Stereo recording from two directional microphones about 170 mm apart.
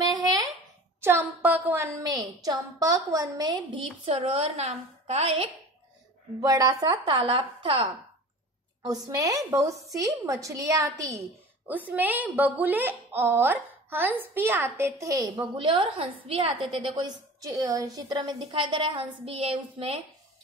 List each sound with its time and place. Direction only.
0.1 s a sound: 25° right (ahead or behind)
1.0 s a woman's voice: 10° right (ahead or behind); by 5.5 s 35° right (ahead or behind)
6.4 s a woman's voice: 20° right (ahead or behind)